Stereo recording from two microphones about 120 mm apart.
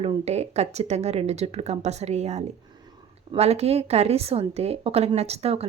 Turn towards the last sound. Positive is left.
turn(degrees=-60)  # may be behind; listen again after turning